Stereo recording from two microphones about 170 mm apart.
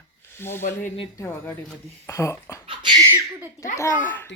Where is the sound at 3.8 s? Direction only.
15° left (ahead or behind).